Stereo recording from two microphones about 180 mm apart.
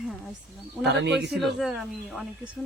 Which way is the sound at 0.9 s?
70° right (ahead or behind).